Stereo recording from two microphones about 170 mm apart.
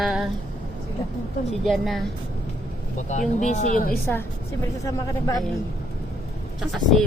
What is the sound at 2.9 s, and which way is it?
Speech, 45° left (ahead or behind).